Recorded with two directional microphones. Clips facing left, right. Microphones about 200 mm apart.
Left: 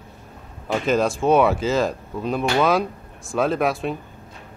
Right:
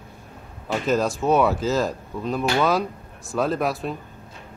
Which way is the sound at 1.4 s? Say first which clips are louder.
Left 2 dB; centre (ahead or behind).